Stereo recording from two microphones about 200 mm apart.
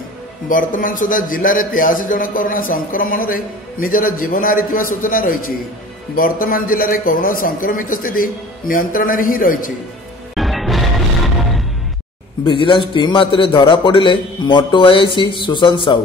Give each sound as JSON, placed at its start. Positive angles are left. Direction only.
{"t": 0.5, "sound": "a man's voice", "side_deg": 40}
{"t": 10.3, "sound": "music", "side_deg": 0}
{"t": 12.4, "sound": "a man's voice", "side_deg": 25}